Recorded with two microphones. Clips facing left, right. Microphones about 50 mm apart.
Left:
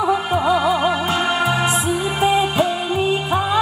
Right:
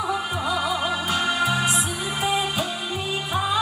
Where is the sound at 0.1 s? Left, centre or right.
Left.